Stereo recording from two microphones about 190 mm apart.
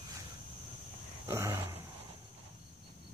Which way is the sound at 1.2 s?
15° right (ahead or behind).